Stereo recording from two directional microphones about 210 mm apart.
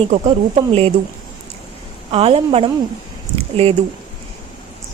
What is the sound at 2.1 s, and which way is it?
Speech, 30° right (ahead or behind).